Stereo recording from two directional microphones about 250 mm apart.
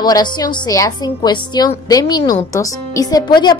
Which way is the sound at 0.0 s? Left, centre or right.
Centre.